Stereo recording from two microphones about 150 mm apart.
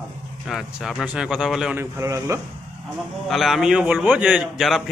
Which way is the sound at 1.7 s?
15° right (ahead or behind).